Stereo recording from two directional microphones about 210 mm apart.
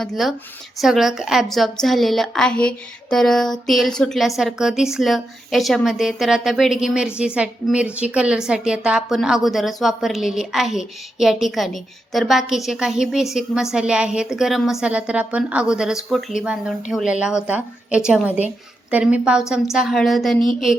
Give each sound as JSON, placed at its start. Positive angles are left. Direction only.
{"t": 0.0, "sound": "a woman's voice", "side_deg": 0}